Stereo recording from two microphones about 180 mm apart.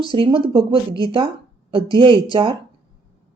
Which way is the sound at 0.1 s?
30° right (ahead or behind).